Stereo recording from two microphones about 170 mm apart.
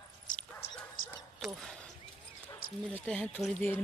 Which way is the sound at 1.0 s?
55° left (ahead or behind).